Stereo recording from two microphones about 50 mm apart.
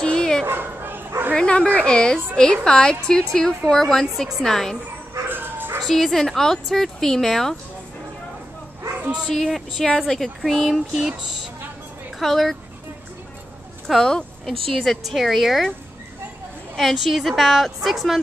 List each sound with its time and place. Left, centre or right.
0.0 s bow-wow: centre
0.5 s bow-wow: right
1.3 s a woman's voice: centre
5.3 s dog: right
6.1 s a woman's voice: centre
9.3 s a woman's voice: centre
12.2 s a woman's voice: centre
13.8 s a woman's voice: centre
16.7 s a woman's voice: centre